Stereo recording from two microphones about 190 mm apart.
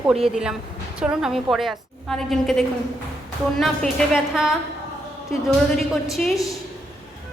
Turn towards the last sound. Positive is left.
turn(degrees=15)  # may be behind; listen again after turning